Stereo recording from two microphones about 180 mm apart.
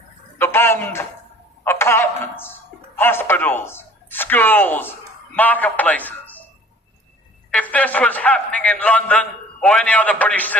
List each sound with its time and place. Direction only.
0.3 s a sound: 15° left (ahead or behind)
1.6 s a man's voice: 15° left (ahead or behind)
7.5 s a man's voice: 5° left (ahead or behind)